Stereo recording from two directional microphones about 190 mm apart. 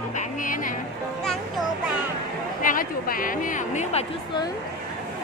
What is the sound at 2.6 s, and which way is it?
Speech, 45° left (ahead or behind).